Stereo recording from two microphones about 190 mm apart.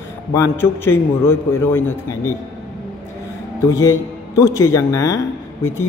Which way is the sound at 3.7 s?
15° left (ahead or behind).